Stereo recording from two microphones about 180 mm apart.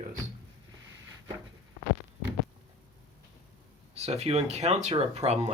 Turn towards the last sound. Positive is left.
turn(degrees=-40)  # may be behind; listen again after turning